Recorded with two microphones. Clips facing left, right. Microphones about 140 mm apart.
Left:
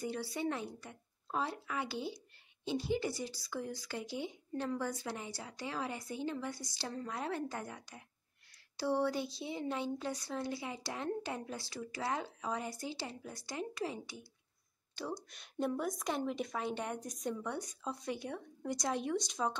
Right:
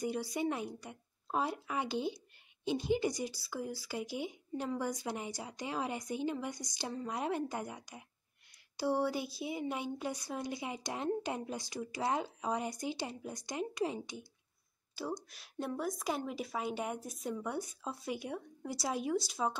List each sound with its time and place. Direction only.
0.0 s speech: 15° right (ahead or behind)
15.1 s a woman's voice: centre (ahead or behind)